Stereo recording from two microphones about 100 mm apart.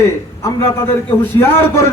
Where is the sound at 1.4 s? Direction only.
25° left (ahead or behind).